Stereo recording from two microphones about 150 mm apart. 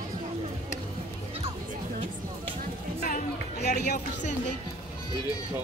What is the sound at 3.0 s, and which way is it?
Music, 80° left.